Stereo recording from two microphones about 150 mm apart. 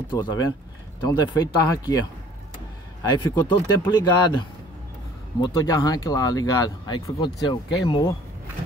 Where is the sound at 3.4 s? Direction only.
30° left (ahead or behind).